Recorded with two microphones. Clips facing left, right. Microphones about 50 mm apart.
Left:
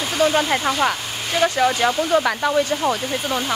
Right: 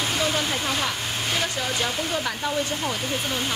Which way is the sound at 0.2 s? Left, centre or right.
Left.